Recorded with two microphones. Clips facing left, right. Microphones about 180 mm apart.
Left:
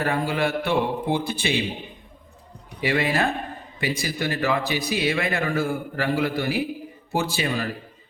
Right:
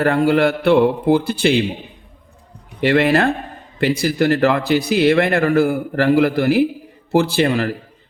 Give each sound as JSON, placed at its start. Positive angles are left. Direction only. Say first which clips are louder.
{"t": 0.0, "sound": "a man's voice", "louder": "right 9 dB", "side_deg": -70}
{"t": 2.8, "sound": "a man's voice", "louder": "right 8 dB", "side_deg": -70}